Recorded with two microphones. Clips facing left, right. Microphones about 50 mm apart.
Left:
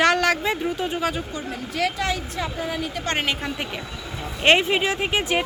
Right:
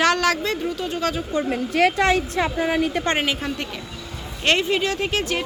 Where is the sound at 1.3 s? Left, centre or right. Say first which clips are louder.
Right 7 dB; right.